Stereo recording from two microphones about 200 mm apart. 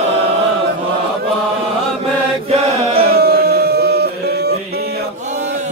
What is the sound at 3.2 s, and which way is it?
Music, 50° right (ahead or behind).